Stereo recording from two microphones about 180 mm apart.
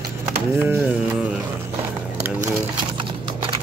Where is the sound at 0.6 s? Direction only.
10° right (ahead or behind).